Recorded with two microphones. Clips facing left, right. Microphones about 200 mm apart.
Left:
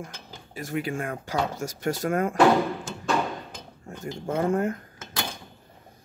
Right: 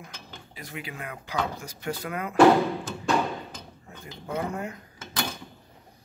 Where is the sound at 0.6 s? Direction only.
45° left (ahead or behind).